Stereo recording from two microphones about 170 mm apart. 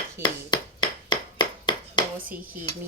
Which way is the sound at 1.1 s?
25° left (ahead or behind).